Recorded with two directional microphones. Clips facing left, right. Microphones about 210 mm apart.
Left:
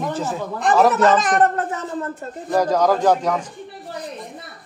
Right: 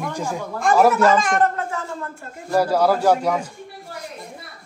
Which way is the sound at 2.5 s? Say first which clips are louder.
Even; 10° right (ahead or behind).